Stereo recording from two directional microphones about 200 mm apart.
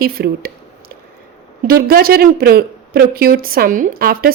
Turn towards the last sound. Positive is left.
turn(degrees=-50)  # may be behind; listen again after turning